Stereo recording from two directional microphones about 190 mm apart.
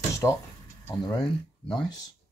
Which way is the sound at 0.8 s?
20° left (ahead or behind).